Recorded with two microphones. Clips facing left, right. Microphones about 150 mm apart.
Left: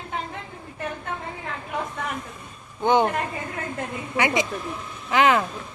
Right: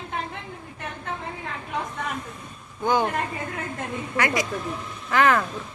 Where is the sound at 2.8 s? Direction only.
25° left (ahead or behind).